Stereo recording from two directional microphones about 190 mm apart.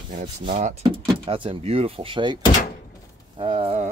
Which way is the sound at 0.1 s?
40° right (ahead or behind).